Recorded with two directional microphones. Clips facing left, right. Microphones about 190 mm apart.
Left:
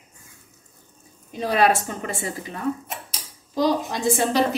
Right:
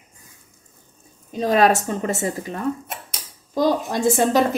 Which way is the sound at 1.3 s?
40° right (ahead or behind).